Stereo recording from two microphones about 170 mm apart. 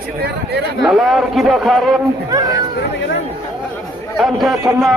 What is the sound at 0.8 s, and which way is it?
A man's voice, centre (ahead or behind).